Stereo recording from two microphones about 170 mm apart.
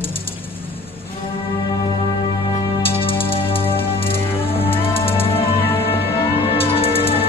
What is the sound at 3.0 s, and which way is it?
Music, 30° left (ahead or behind).